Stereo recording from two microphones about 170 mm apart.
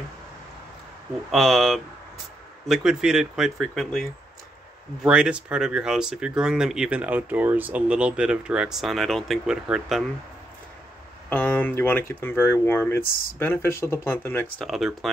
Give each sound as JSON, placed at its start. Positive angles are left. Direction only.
{"t": 1.3, "sound": "speech", "side_deg": 0}
{"t": 11.2, "sound": "speech", "side_deg": 10}
{"t": 14.6, "sound": "speech", "side_deg": 0}